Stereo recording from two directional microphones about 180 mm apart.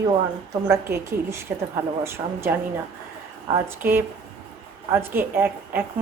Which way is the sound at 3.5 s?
10° right (ahead or behind).